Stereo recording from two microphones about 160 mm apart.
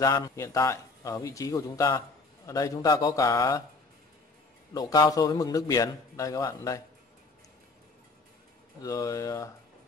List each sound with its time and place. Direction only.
0.0 s a man's voice: 20° left (ahead or behind)
4.7 s a man's voice: 25° left (ahead or behind)
8.8 s a man's voice: 20° left (ahead or behind)